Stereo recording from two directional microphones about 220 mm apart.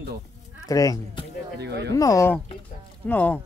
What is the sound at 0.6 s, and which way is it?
Speech, 15° left (ahead or behind).